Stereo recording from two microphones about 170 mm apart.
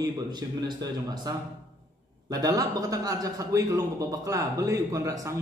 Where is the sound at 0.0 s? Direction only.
25° right (ahead or behind).